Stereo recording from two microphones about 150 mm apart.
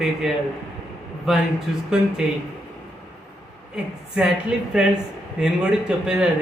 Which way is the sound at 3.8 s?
5° right (ahead or behind).